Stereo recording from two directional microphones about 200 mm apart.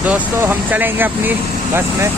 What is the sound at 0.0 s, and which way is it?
Speech, 10° right (ahead or behind).